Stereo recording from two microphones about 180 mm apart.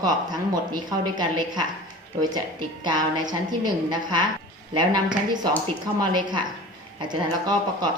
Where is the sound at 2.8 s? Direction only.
25° right (ahead or behind).